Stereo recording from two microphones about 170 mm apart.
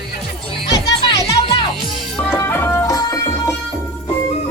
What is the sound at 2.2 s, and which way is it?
Music, 10° left (ahead or behind).